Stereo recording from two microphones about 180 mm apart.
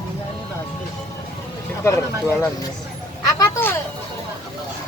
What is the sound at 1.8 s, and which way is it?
Speech, 15° left (ahead or behind).